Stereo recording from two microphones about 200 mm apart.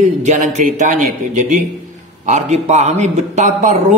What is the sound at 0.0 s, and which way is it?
A man's voice, 35° right (ahead or behind).